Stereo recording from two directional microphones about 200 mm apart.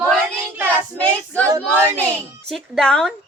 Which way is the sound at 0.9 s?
5° left (ahead or behind).